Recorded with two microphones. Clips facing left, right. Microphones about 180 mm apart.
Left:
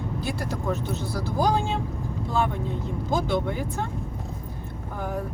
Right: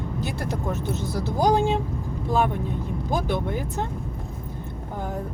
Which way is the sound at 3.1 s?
15° right (ahead or behind).